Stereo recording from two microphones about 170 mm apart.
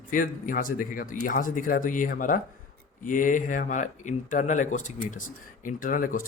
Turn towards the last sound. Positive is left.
turn(degrees=55)  # may be behind; listen again after turning